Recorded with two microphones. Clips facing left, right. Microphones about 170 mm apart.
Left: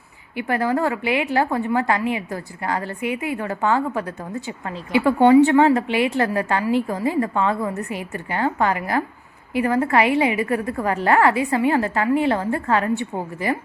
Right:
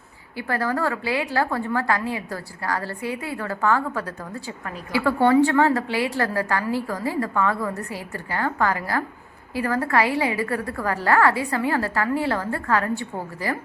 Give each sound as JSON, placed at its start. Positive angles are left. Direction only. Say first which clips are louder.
{"t": 0.3, "sound": "a woman's voice", "louder": "left 4 dB", "side_deg": 20}